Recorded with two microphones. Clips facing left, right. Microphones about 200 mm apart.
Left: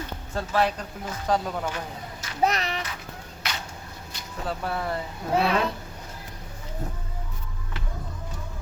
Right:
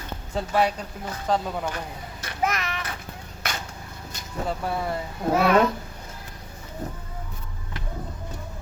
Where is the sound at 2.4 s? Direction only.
35° left (ahead or behind).